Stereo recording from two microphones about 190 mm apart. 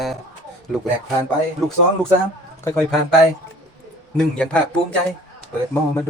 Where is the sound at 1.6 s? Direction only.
Centre (ahead or behind).